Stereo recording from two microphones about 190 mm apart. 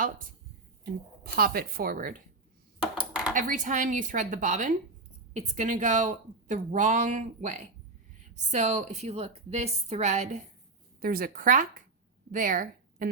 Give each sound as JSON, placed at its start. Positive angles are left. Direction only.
{"t": 0.0, "sound": "a woman's voice", "side_deg": -45}
{"t": 3.0, "sound": "dishes", "side_deg": -5}
{"t": 3.3, "sound": "a woman's voice", "side_deg": -45}
{"t": 11.0, "sound": "a woman's voice", "side_deg": -50}